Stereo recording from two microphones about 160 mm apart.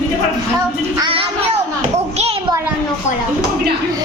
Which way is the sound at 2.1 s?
40° right (ahead or behind).